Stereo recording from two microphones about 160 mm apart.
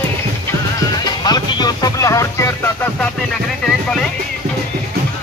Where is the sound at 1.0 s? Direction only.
25° left (ahead or behind).